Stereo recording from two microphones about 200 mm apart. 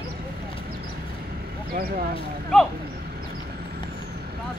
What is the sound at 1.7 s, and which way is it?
Speech, 50° right (ahead or behind).